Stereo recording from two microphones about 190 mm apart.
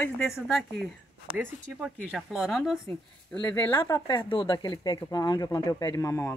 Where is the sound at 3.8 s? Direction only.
25° left (ahead or behind).